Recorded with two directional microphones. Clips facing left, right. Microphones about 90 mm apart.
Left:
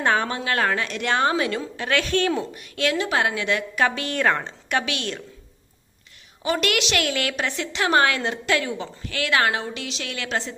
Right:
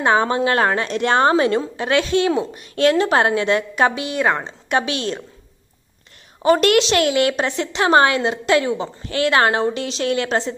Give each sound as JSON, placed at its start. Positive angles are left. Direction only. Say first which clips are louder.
{"t": 0.0, "sound": "a woman's voice", "louder": "right 6 dB", "side_deg": -25}
{"t": 6.4, "sound": "a woman's voice", "louder": "right 9 dB", "side_deg": -40}